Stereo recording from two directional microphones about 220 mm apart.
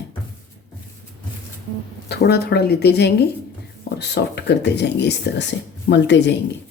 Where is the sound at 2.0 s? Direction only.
50° left (ahead or behind).